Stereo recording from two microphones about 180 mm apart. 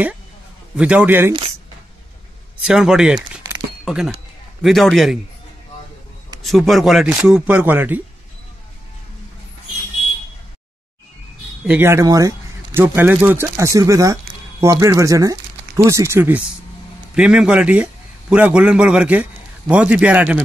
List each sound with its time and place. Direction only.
0.7 s a man's voice: 5° right (ahead or behind)
2.6 s speech: 5° right (ahead or behind)
6.4 s speech: centre (ahead or behind)
11.6 s a man's voice: 10° right (ahead or behind)